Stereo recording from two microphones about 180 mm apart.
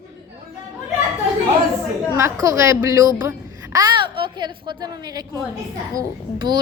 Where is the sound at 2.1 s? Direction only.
15° right (ahead or behind).